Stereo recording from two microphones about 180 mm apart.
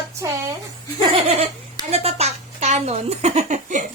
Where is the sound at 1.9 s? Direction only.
35° right (ahead or behind).